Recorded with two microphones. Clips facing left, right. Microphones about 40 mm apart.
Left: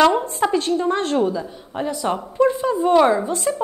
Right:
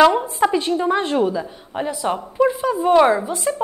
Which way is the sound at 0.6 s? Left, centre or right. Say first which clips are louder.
Right 1 dB; right.